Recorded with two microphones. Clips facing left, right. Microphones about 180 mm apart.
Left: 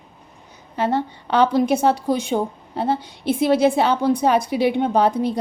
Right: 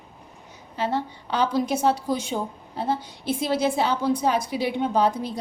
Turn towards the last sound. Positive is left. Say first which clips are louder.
# left 4 dB
turn(degrees=60)  # may be behind; listen again after turning